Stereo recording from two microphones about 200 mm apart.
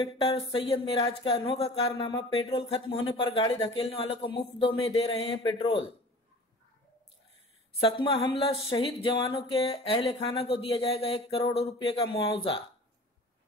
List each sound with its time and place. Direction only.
0.0 s speech: 20° left (ahead or behind)
7.8 s speech: 25° left (ahead or behind)